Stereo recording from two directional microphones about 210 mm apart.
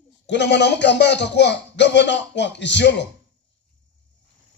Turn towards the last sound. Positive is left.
turn(degrees=55)  # may be behind; listen again after turning